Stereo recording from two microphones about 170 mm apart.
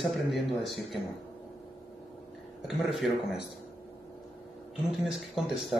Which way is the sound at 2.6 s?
Centre (ahead or behind).